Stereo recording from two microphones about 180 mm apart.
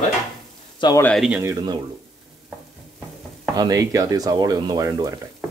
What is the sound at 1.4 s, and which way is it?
Speech, 20° right (ahead or behind).